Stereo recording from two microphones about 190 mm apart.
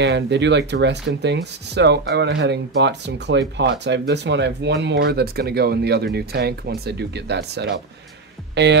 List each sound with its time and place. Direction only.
0.0 s speech: 65° right (ahead or behind)